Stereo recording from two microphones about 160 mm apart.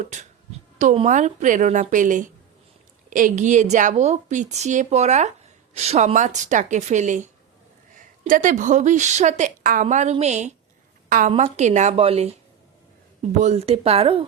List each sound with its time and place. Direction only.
0.0 s a woman's voice: 50° right (ahead or behind)
13.4 s speech: 40° right (ahead or behind)